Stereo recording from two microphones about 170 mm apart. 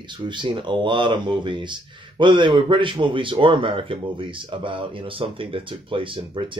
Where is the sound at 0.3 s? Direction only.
30° right (ahead or behind).